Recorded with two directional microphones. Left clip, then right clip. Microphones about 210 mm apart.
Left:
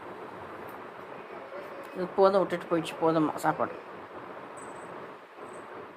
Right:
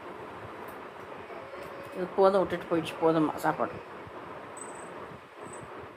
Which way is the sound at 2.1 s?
15° left (ahead or behind).